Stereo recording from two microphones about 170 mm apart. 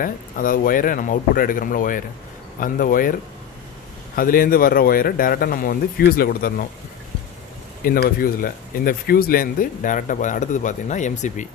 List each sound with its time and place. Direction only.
0.0 s speech: 55° left (ahead or behind)
7.8 s speech: 60° left (ahead or behind)